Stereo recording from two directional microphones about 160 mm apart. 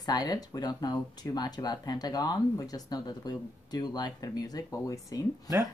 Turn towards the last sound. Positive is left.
turn(degrees=20)  # may be behind; listen again after turning